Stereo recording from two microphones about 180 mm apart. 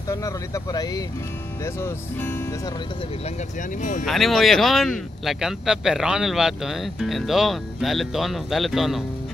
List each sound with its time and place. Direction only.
0.1 s speech: 20° left (ahead or behind)
4.0 s speech: centre (ahead or behind)